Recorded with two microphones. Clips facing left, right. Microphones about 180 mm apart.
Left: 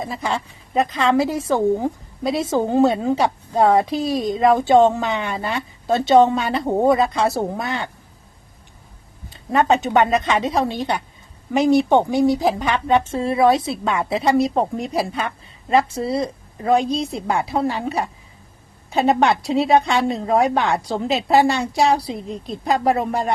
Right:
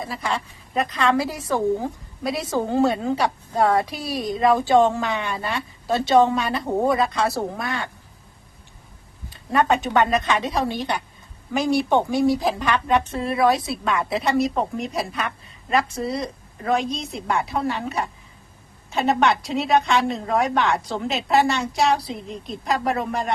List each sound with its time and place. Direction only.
0.1 s a woman's voice: 25° left (ahead or behind)
9.3 s a woman's voice: 20° left (ahead or behind)